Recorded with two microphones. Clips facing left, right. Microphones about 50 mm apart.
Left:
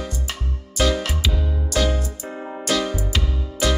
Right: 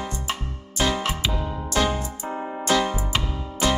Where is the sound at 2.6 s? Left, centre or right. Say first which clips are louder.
Right 1 dB; right.